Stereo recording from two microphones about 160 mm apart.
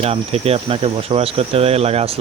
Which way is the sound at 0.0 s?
40° right (ahead or behind).